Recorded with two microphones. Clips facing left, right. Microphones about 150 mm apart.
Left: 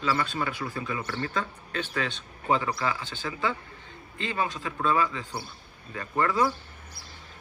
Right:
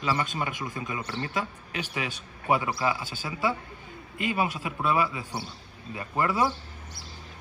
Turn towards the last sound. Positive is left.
turn(degrees=-20)  # may be behind; listen again after turning